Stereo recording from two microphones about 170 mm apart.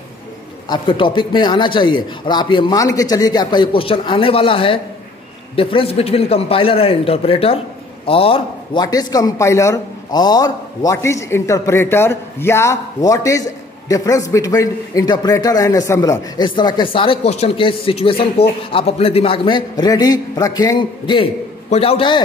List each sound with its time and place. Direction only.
0.7 s a man's voice: 30° left (ahead or behind)
8.8 s a man's voice: 20° left (ahead or behind)